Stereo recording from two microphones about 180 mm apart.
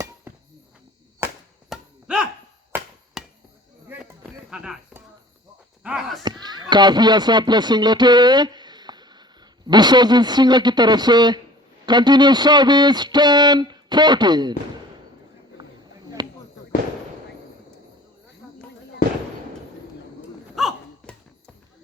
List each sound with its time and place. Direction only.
1.7 s a sound: 5° right (ahead or behind)
3.2 s chop: centre (ahead or behind)
3.8 s a sound: 10° right (ahead or behind)
4.4 s music: centre (ahead or behind)
5.8 s speech: centre (ahead or behind)
6.2 s speech: 25° right (ahead or behind)
16.2 s fireworks: 25° right (ahead or behind)
20.6 s hiccup: centre (ahead or behind)